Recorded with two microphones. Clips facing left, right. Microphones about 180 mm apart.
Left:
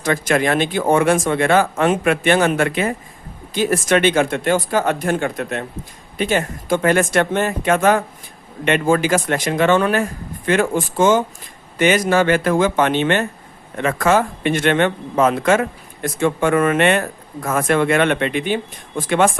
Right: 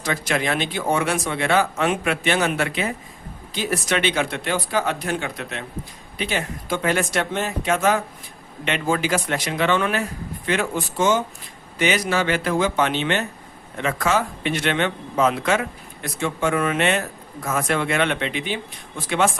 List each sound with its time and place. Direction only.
0.0 s a man's voice: 50° left (ahead or behind)